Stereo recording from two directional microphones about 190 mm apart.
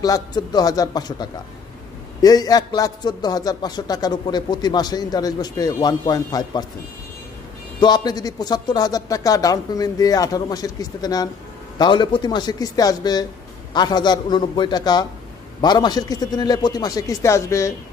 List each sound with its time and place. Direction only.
0.0 s a man's voice: 20° left (ahead or behind)
7.8 s a man's voice: 20° left (ahead or behind)